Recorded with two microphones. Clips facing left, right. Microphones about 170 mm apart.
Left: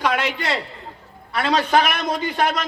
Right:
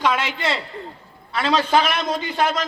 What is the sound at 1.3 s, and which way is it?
A man's voice, 55° left (ahead or behind).